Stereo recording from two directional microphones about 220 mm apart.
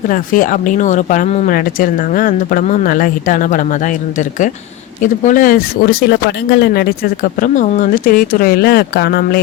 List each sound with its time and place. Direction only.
0.1 s speech: 40° left (ahead or behind)
5.0 s speech: 35° left (ahead or behind)